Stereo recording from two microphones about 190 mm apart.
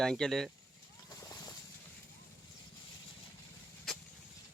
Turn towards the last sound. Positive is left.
turn(degrees=0)  # may be behind; listen again after turning